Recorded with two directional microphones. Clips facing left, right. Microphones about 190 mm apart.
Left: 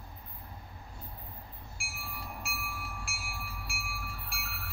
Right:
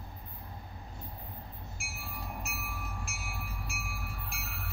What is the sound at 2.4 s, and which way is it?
Train, 20° right (ahead or behind).